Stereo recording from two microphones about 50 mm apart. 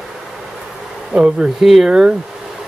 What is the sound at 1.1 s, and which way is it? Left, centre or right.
Speech, right.